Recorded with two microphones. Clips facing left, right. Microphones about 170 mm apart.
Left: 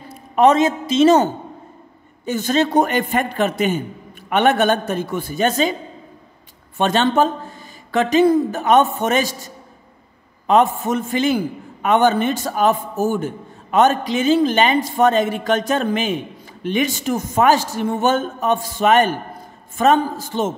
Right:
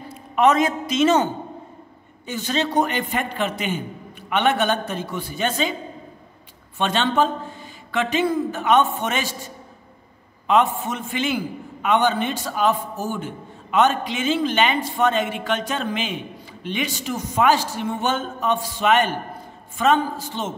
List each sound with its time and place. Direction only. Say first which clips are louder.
0.4 s a man's voice: left 4 dB; 30° left (ahead or behind)
6.8 s a man's voice: left 4 dB; 45° left (ahead or behind)
10.4 s a man's voice: left 4 dB; 40° left (ahead or behind)